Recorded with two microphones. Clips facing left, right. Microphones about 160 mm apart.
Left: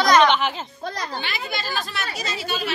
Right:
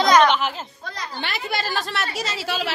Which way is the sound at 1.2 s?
75° right (ahead or behind).